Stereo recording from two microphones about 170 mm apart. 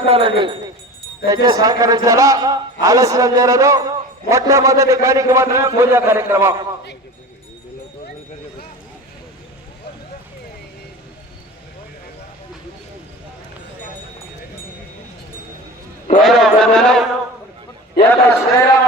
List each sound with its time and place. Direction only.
0.0 s speech: 35° right (ahead or behind)
1.3 s a man's voice: 20° right (ahead or behind)
16.2 s mantra: centre (ahead or behind)
18.1 s a man's voice: 15° left (ahead or behind)